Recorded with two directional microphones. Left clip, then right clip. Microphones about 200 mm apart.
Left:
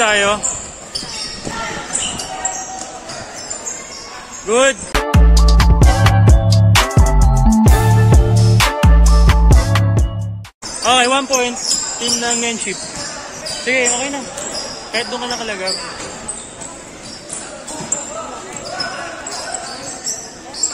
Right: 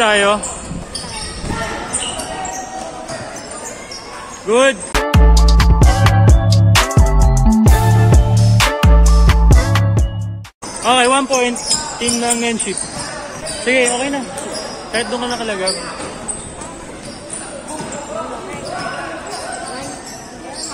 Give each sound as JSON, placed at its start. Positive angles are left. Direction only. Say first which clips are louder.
{"t": 0.0, "sound": "speech", "louder": "right 1 dB", "side_deg": 0}
{"t": 4.5, "sound": "speech", "louder": "right 1 dB", "side_deg": 15}
{"t": 4.9, "sound": "music", "louder": "right 1 dB", "side_deg": 0}
{"t": 10.8, "sound": "speech", "louder": "right 1 dB", "side_deg": 20}
{"t": 11.2, "sound": "speech", "louder": "right 1 dB", "side_deg": 0}
{"t": 13.7, "sound": "speech", "louder": "right 2 dB", "side_deg": -5}